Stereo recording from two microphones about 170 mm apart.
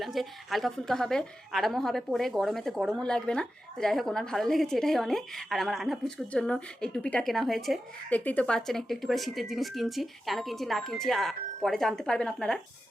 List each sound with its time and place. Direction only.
0.0 s a woman's voice: centre (ahead or behind)